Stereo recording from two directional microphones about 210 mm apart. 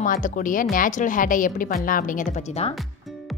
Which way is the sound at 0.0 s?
40° left (ahead or behind).